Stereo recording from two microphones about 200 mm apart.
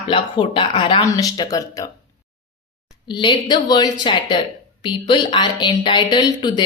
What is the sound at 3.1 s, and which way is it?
Speech, 20° left (ahead or behind).